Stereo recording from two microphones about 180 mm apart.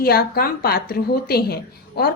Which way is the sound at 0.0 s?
55° left (ahead or behind).